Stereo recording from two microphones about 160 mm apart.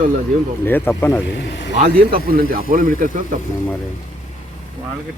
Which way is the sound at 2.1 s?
60° right (ahead or behind).